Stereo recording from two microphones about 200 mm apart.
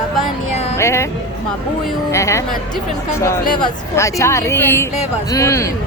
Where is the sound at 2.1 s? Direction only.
15° left (ahead or behind).